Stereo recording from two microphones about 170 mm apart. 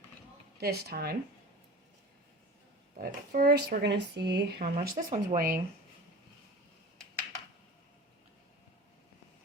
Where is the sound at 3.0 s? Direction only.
55° right (ahead or behind); by 4.4 s 85° right.